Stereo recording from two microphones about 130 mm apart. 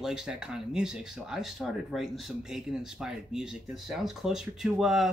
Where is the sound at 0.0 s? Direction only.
5° right (ahead or behind).